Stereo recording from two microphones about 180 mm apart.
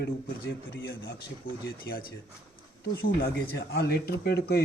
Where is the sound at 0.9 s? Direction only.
60° left (ahead or behind).